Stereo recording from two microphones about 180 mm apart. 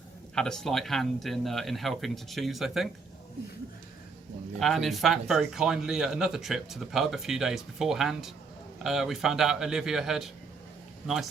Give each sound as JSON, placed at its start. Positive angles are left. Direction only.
{"t": 0.3, "sound": "speech", "side_deg": 5}
{"t": 4.6, "sound": "speech", "side_deg": 0}